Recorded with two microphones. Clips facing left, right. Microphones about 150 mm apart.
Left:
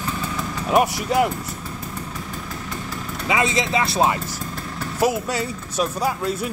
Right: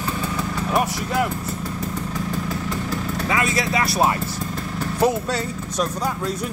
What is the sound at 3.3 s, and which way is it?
Speech, 20° left (ahead or behind).